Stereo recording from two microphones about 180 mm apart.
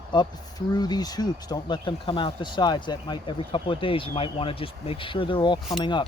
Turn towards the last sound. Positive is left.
turn(degrees=25)  # may be behind; listen again after turning